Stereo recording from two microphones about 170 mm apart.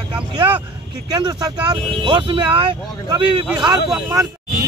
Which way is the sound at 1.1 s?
25° right (ahead or behind).